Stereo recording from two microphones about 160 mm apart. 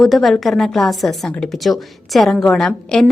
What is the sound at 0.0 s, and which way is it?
A woman's voice, centre (ahead or behind).